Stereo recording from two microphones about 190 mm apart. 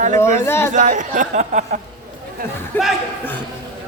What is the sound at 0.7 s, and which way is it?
Speech, 40° right (ahead or behind).